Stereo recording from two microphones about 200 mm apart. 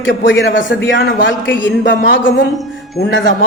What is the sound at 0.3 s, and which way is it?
A man's voice, 60° left (ahead or behind).